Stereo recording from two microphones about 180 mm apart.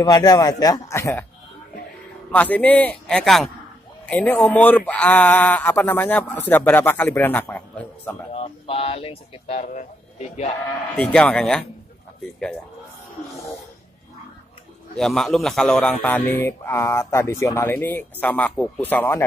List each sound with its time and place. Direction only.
0.0 s a man's voice: 20° left (ahead or behind)
2.3 s speech: 10° left (ahead or behind)
8.3 s speech: 30° left (ahead or behind)
11.0 s speech: 5° left (ahead or behind)
15.0 s speech: centre (ahead or behind)